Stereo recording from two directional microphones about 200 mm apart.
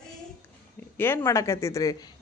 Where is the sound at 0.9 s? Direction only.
10° left (ahead or behind).